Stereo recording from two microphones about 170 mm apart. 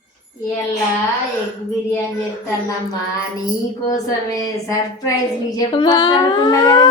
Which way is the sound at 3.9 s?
20° left (ahead or behind).